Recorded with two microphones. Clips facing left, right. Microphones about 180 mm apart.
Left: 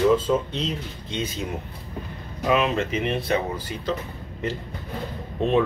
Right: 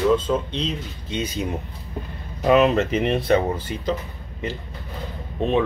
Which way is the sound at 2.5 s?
40° right (ahead or behind).